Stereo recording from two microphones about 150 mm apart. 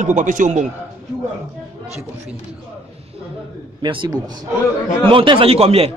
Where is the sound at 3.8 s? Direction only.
30° right (ahead or behind).